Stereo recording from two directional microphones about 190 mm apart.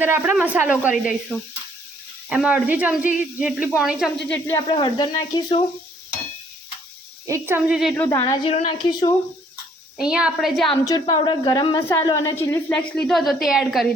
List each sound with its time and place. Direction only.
0.0 s speech: 10° right (ahead or behind)
2.3 s a woman's voice: 5° right (ahead or behind)
4.3 s speech: 10° left (ahead or behind)
4.7 s a woman's voice: 20° left (ahead or behind)
7.3 s speech: 15° right (ahead or behind)
8.2 s a woman's voice: 25° left (ahead or behind)
10.0 s a woman's voice: 5° right (ahead or behind)
10.7 s a woman's voice: 20° left (ahead or behind); by 13.8 s centre (ahead or behind)